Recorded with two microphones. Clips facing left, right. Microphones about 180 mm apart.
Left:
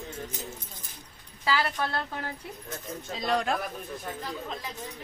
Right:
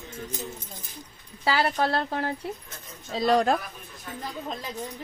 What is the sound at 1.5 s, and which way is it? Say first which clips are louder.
Speech: right 4 dB; 30° right (ahead or behind).